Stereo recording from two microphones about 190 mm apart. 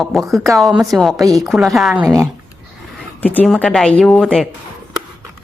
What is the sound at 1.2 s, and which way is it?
Speech, 20° right (ahead or behind).